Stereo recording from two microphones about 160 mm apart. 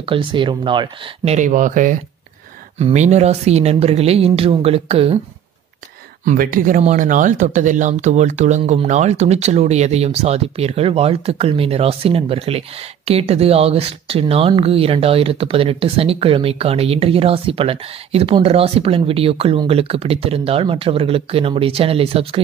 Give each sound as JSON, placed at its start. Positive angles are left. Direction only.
{"t": 0.0, "sound": "speech", "side_deg": -30}
{"t": 1.3, "sound": "speech", "side_deg": -50}
{"t": 6.2, "sound": "speech", "side_deg": -60}